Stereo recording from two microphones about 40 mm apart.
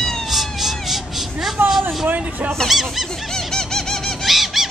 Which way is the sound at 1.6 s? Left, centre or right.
Right.